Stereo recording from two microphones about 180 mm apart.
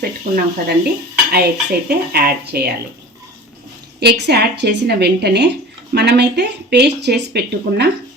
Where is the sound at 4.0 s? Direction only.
65° right (ahead or behind).